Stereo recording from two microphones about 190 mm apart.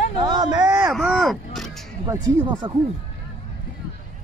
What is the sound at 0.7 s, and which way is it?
Speech, 5° right (ahead or behind).